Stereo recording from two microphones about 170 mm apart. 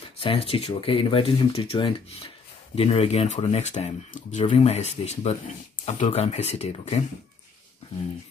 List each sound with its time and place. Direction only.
0.2 s speech: 35° left (ahead or behind)